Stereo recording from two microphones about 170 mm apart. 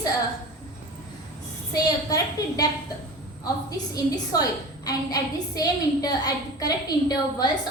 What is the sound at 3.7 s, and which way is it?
A woman's voice, 20° left (ahead or behind).